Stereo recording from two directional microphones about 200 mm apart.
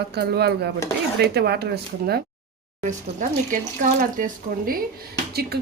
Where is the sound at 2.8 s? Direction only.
40° right (ahead or behind).